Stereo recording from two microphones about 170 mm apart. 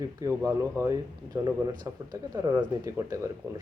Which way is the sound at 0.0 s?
20° right (ahead or behind).